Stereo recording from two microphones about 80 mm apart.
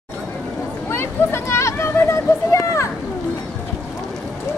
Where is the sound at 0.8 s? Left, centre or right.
Left.